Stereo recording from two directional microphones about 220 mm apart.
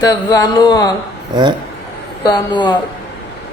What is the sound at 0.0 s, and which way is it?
Speech, 15° left (ahead or behind).